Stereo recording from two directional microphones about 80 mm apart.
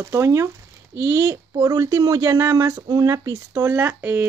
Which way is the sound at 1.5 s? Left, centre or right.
Right.